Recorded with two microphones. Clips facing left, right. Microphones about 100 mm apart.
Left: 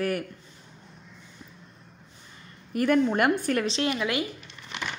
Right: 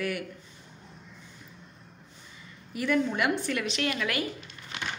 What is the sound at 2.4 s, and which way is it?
A woman's voice, 50° left (ahead or behind).